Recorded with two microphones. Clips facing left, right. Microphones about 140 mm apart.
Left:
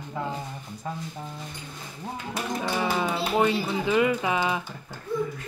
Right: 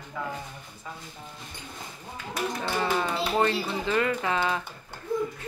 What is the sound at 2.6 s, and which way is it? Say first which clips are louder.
Speech: left 1 dB; 10° left (ahead or behind).